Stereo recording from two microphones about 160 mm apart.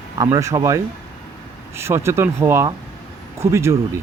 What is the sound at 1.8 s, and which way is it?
Speech, 15° right (ahead or behind).